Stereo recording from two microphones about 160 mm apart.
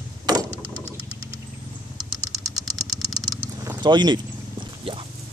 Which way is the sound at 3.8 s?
30° right (ahead or behind).